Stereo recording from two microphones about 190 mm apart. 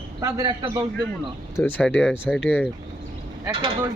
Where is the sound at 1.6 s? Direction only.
10° left (ahead or behind).